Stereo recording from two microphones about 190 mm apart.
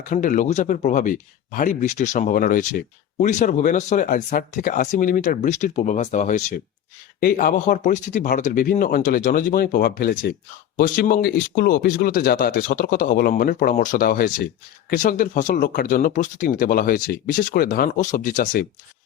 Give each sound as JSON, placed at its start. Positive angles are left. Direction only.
{"t": 0.0, "sound": "speech", "side_deg": 45}